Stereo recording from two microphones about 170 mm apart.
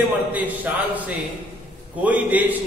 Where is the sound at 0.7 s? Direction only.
10° right (ahead or behind).